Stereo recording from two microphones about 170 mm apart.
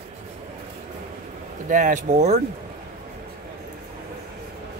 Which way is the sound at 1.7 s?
50° right (ahead or behind).